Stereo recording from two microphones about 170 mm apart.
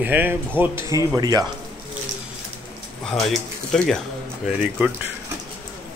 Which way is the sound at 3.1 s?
Centre (ahead or behind).